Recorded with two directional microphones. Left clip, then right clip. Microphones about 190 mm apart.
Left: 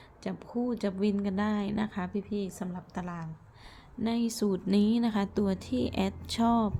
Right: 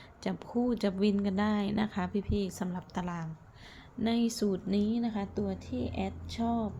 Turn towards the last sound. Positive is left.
turn(degrees=35)  # may be behind; listen again after turning